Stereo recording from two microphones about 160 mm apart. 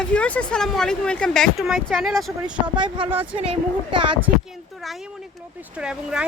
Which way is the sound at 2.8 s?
30° right (ahead or behind).